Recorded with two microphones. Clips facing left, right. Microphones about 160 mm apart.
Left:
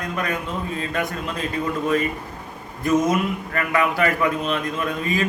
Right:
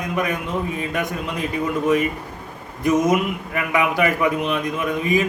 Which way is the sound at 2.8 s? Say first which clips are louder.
Right 2 dB; 15° right (ahead or behind).